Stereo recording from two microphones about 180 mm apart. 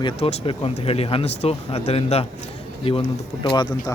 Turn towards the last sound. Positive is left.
turn(degrees=30)  # may be behind; listen again after turning